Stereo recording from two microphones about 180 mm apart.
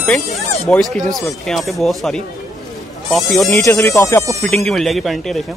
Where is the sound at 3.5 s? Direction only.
15° left (ahead or behind).